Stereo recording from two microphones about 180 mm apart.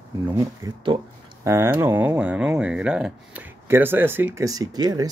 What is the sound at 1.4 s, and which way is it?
Speech, 15° right (ahead or behind).